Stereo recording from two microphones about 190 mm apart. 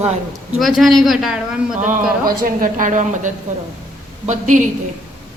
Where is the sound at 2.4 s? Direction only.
45° right (ahead or behind).